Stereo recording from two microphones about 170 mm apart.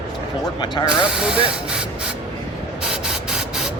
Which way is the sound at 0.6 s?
25° left (ahead or behind).